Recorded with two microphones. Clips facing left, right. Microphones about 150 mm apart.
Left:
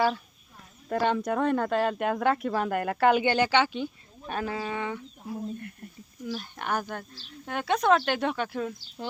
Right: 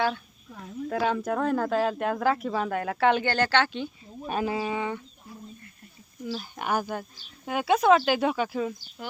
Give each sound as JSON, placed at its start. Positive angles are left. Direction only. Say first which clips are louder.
{"t": 0.9, "sound": "speech", "louder": "left 1 dB", "side_deg": 0}
{"t": 4.3, "sound": "speech", "louder": "right 3 dB", "side_deg": -10}
{"t": 5.2, "sound": "speech", "louder": "left 10 dB", "side_deg": 75}
{"t": 6.2, "sound": "speech", "louder": "right 2 dB", "side_deg": -5}